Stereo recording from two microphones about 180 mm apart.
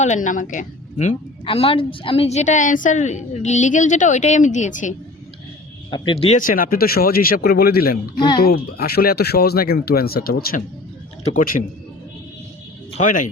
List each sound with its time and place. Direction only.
0.0 s speech: 45° left (ahead or behind)
5.9 s speech: 30° left (ahead or behind)
6.4 s speech: 50° left (ahead or behind)
12.9 s speech: 45° left (ahead or behind)